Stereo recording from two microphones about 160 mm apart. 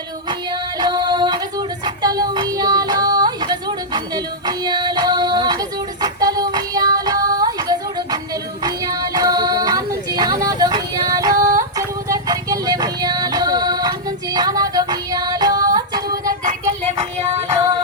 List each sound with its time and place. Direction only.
0.8 s a sound: 25° right (ahead or behind)
8.6 s child singing: 25° right (ahead or behind)
14.3 s music: 25° right (ahead or behind)
16.2 s music: 55° right (ahead or behind)